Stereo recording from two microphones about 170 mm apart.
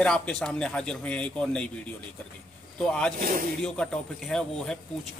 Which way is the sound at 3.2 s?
55° right (ahead or behind).